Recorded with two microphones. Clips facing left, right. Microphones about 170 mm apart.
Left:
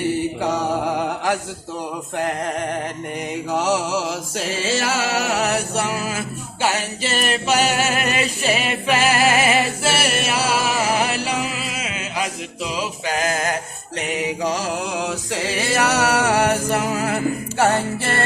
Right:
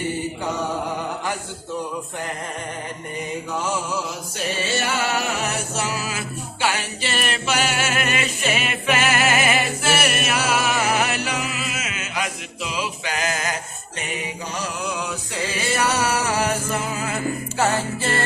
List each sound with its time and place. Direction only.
0.9 s mantra: 75° left (ahead or behind)
3.5 s music: 75° left (ahead or behind); by 13.6 s 45° left (ahead or behind)
14.0 s mantra: 85° left; by 17.2 s 60° left (ahead or behind)